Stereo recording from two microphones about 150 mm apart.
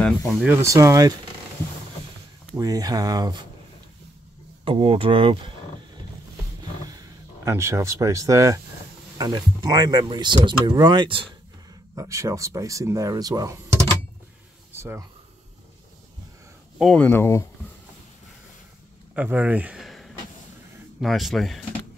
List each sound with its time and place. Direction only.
0.0 s speech: centre (ahead or behind)
0.5 s speech: 20° right (ahead or behind)
2.5 s speech: 25° right (ahead or behind)
4.6 s speech: 35° right (ahead or behind)
7.4 s speech: 20° right (ahead or behind)
11.9 s speech: 20° right (ahead or behind)
14.7 s a sound: 15° right (ahead or behind)
16.9 s speech: 10° left (ahead or behind)
19.1 s speech: 10° right (ahead or behind)